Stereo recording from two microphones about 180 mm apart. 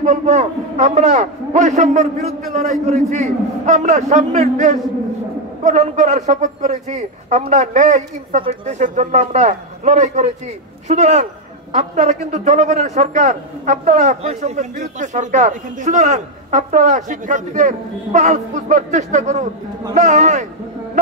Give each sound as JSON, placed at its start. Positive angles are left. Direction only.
{"t": 0.0, "sound": "a man's voice", "side_deg": -40}